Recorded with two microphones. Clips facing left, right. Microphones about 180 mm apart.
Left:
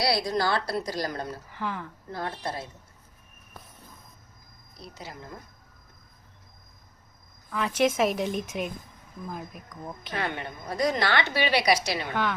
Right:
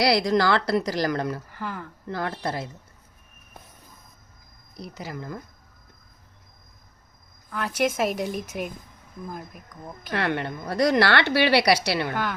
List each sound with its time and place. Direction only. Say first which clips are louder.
0.0 s a woman's voice: right 5 dB; 90° right
1.5 s speech: even; centre (ahead or behind)
2.0 s speech: right 5 dB; 85° right
4.9 s speech: right 7 dB; 85° right
7.7 s a woman's voice: left 1 dB; 10° right (ahead or behind)
10.1 s a woman's voice: right 6 dB; 70° right (ahead or behind)